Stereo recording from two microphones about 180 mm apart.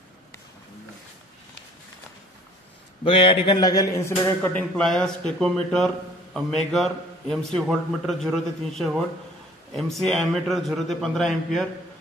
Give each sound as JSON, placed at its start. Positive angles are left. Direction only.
{"t": 3.0, "sound": "a man's voice", "side_deg": 30}